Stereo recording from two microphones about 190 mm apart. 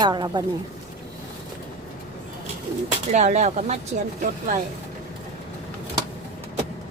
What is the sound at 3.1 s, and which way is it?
Speech, 40° right (ahead or behind).